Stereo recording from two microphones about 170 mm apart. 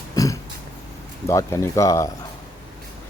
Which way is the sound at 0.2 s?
20° left (ahead or behind).